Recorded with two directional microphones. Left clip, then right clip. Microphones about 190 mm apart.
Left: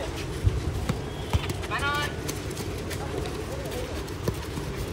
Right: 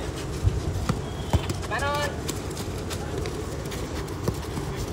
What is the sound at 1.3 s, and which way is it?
Clip-clop, 50° right (ahead or behind).